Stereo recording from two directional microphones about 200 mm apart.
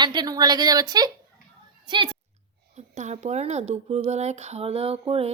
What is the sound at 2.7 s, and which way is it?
Speech, 35° right (ahead or behind).